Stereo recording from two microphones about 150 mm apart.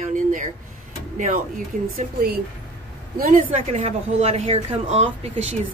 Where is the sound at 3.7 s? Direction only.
45° right (ahead or behind).